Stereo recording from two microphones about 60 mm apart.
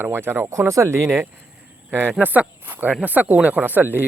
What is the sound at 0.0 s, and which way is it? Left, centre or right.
Speech, right.